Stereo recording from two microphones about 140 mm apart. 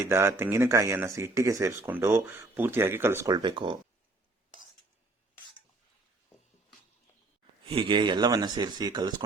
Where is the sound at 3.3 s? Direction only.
35° right (ahead or behind).